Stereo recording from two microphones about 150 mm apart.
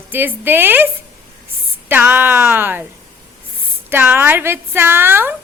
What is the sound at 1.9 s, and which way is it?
Speech, 15° right (ahead or behind).